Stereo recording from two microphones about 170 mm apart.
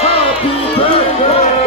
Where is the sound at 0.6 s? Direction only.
35° left (ahead or behind).